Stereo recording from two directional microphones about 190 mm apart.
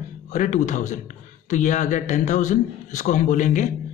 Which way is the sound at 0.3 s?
40° left (ahead or behind).